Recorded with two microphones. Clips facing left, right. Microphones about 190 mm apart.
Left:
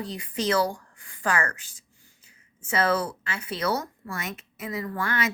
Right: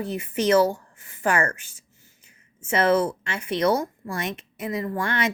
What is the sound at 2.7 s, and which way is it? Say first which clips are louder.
Speech: right 5 dB; 25° right (ahead or behind).